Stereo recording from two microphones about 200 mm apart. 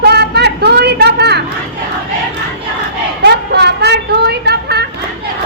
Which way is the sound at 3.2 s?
55° right (ahead or behind).